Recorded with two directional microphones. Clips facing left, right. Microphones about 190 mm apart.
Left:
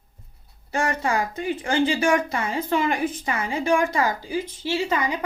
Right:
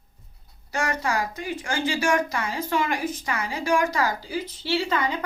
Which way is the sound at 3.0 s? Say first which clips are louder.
Left 3 dB; 55° left (ahead or behind).